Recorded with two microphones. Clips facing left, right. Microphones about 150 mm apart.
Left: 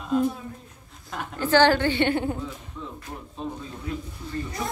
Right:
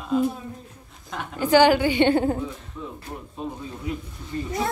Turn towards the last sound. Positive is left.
turn(degrees=-15)  # may be behind; listen again after turning